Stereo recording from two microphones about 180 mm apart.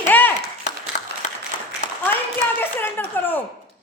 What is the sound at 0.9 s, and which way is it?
Applause, 45° left (ahead or behind).